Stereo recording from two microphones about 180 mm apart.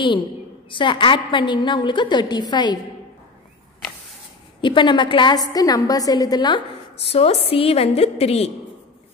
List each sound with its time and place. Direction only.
0.7 s a woman's voice: 25° left (ahead or behind)
4.6 s a woman's voice: 25° left (ahead or behind)
7.1 s a woman's voice: 35° left (ahead or behind)